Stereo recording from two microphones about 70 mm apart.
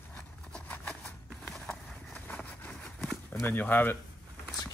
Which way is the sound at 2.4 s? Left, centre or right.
Centre.